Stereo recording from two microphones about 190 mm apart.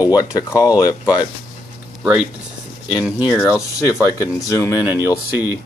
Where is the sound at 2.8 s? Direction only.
5° right (ahead or behind).